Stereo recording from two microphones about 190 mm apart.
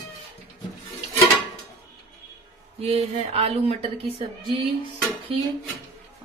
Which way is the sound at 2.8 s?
35° right (ahead or behind).